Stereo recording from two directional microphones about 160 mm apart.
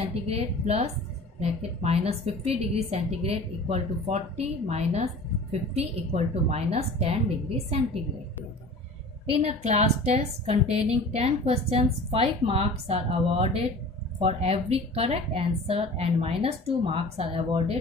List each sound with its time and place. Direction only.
0.3 s a woman's voice: 40° right (ahead or behind)
9.4 s a woman's voice: 45° right (ahead or behind)